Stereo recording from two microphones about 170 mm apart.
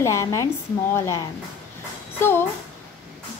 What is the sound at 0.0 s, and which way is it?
A woman's voice, 15° left (ahead or behind).